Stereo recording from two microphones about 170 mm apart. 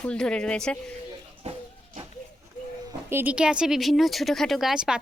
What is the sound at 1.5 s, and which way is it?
Speech, 40° right (ahead or behind).